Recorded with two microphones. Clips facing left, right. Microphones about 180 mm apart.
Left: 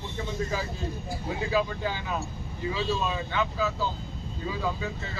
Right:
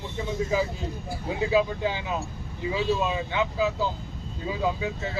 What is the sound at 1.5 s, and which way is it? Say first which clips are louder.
Speech: right 4 dB; 20° right (ahead or behind).